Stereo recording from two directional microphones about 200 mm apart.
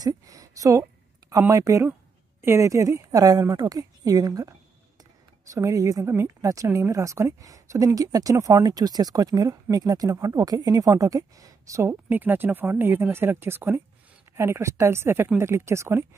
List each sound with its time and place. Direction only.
0.0 s speech: 15° right (ahead or behind)
5.5 s speech: 15° right (ahead or behind)